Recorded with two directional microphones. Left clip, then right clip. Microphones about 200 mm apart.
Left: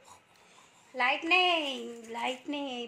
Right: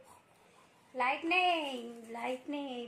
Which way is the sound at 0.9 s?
40° left (ahead or behind).